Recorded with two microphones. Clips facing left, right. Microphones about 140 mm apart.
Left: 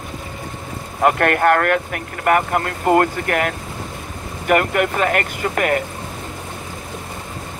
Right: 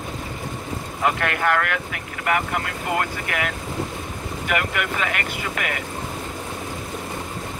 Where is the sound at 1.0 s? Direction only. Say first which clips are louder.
Left 7 dB; 50° left (ahead or behind).